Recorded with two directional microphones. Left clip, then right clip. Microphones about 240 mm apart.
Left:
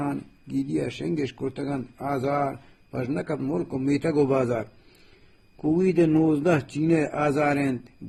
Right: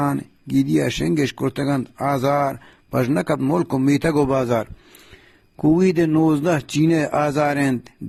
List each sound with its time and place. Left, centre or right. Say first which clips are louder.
0.0 s a man's voice: right 8 dB; right
1.7 s speech: right 8 dB; right
2.1 s a man's voice: right 5 dB; right
5.7 s a man's voice: right 2 dB; right